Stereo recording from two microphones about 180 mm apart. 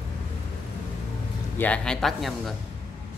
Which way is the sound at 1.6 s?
5° left (ahead or behind).